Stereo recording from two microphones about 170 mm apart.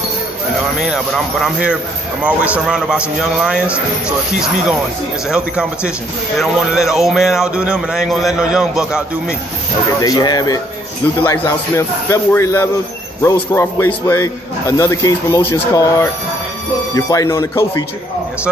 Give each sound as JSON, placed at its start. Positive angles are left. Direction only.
{"t": 0.7, "sound": "speech", "side_deg": -5}
{"t": 5.3, "sound": "speech", "side_deg": -5}
{"t": 10.0, "sound": "speech", "side_deg": 20}
{"t": 11.1, "sound": "a man's voice", "side_deg": 10}